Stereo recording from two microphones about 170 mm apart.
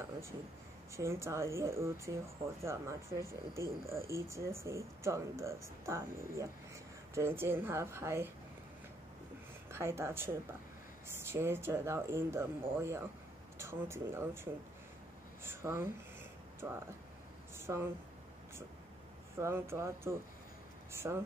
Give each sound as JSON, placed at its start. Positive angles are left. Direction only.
{"t": 0.9, "sound": "speech", "side_deg": -15}
{"t": 9.7, "sound": "a woman's voice", "side_deg": -15}
{"t": 17.6, "sound": "speech", "side_deg": -15}
{"t": 19.3, "sound": "speech", "side_deg": -15}